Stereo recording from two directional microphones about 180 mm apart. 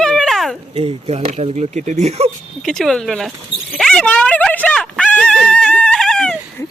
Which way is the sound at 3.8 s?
5° left (ahead or behind).